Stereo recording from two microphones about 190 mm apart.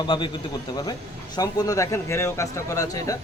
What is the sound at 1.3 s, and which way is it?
Speech, 20° left (ahead or behind).